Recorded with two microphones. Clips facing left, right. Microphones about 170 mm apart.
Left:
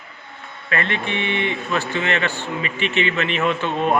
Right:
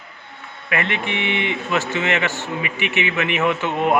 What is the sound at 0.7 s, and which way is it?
A man's voice, 15° right (ahead or behind).